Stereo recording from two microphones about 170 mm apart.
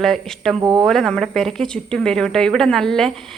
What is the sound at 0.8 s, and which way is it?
Speech, centre (ahead or behind).